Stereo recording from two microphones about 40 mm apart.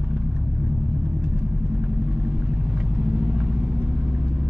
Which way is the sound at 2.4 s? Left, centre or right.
Right.